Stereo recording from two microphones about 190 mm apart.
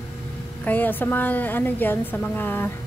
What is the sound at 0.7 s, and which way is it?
A woman's voice, 10° left (ahead or behind).